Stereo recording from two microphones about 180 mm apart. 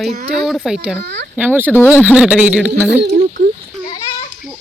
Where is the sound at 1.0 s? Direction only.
75° right (ahead or behind).